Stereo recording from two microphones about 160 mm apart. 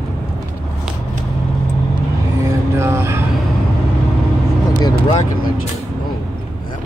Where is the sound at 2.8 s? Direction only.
15° right (ahead or behind).